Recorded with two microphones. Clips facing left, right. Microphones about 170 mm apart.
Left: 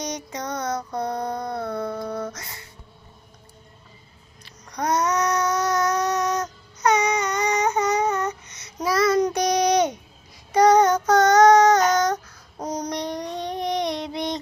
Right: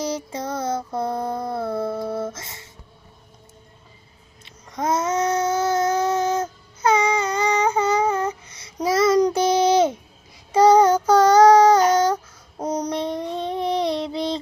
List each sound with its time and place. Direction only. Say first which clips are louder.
0.0 s mantra: right 4 dB; 25° right (ahead or behind)
4.7 s a sound: right 1 dB; 25° right (ahead or behind)
10.5 s child singing: right 2 dB; 30° right (ahead or behind)